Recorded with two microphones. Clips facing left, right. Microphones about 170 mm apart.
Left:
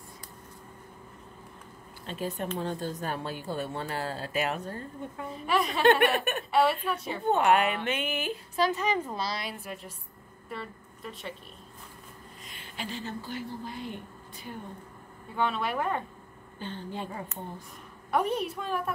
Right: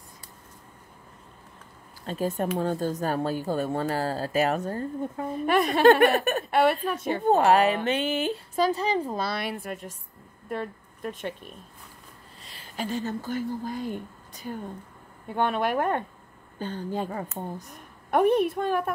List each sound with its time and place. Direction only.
2.0 s a woman's voice: 45° right (ahead or behind)
9.2 s a woman's voice: 60° right (ahead or behind)
12.4 s speech: 40° right (ahead or behind)
15.3 s a woman's voice: 55° right (ahead or behind)
16.5 s speech: 40° right (ahead or behind)